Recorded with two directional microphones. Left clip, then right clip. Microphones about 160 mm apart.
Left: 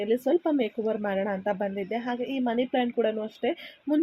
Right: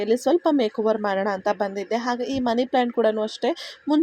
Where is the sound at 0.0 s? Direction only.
30° right (ahead or behind).